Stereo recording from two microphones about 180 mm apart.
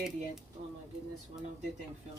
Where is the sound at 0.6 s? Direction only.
40° right (ahead or behind).